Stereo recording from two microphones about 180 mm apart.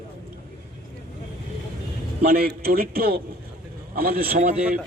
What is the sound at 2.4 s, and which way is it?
Speech, 55° right (ahead or behind).